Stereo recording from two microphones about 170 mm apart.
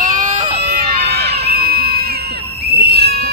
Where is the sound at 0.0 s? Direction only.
50° right (ahead or behind).